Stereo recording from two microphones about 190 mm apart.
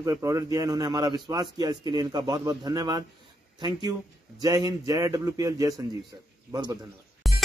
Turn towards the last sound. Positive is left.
turn(degrees=0)  # may be behind; listen again after turning